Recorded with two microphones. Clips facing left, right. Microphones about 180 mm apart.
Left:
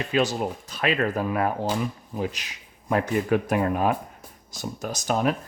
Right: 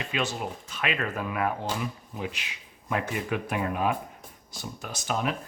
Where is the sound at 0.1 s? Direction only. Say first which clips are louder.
Left 8 dB; 40° left (ahead or behind).